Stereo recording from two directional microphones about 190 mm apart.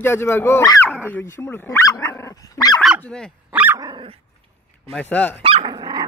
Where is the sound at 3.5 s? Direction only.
10° right (ahead or behind).